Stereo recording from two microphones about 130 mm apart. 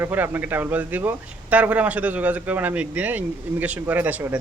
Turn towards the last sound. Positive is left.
turn(degrees=-10)  # may be behind; listen again after turning